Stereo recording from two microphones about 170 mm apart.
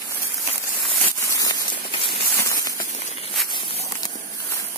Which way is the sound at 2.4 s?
20° left (ahead or behind).